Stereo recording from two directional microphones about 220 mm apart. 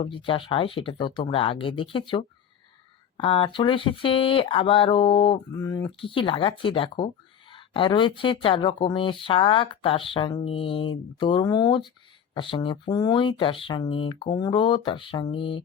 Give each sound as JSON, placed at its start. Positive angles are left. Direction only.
{"t": 0.0, "sound": "speech", "side_deg": 25}